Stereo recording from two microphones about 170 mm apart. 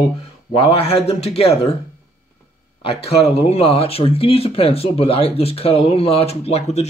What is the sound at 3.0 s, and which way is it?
Speech, 35° left (ahead or behind).